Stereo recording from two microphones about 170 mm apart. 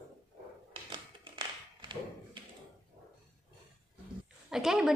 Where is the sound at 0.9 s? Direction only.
25° right (ahead or behind).